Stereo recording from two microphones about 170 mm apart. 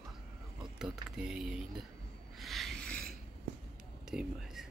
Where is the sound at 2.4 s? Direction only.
Centre (ahead or behind).